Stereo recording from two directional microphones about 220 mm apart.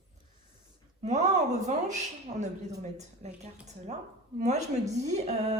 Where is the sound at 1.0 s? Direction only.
30° right (ahead or behind).